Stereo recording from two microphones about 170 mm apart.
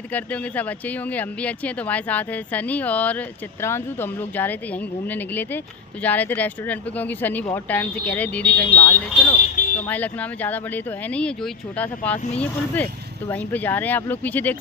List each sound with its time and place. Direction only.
0.1 s speech: 10° left (ahead or behind)
8.8 s speech: 30° left (ahead or behind)
9.4 s a sound: 50° left (ahead or behind)
9.8 s speech: 10° left (ahead or behind)
13.3 s speech: 10° left (ahead or behind)